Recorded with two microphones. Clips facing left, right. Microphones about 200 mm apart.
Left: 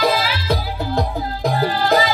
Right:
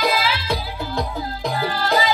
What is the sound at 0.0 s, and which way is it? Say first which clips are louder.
Music: left 3 dB; 40° left (ahead or behind).